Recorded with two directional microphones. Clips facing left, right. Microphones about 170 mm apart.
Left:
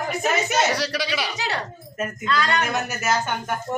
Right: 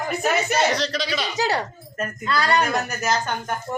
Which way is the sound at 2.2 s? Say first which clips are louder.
Right 2 dB; 35° right (ahead or behind).